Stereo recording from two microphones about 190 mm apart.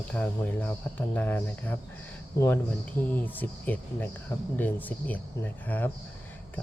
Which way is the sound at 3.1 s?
10° left (ahead or behind).